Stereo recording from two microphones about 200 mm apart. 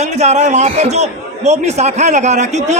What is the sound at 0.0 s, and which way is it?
A man's voice, 35° right (ahead or behind).